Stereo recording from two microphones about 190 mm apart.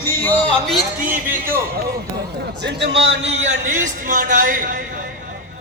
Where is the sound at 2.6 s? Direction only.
60° right (ahead or behind).